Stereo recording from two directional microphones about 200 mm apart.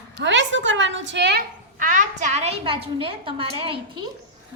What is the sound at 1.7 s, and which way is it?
A woman's voice, 40° right (ahead or behind).